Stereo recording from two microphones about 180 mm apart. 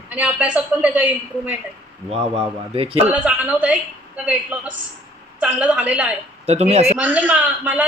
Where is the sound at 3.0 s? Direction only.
10° right (ahead or behind).